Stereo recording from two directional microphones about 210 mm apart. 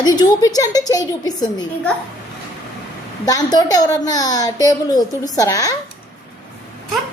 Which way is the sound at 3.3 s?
15° left (ahead or behind).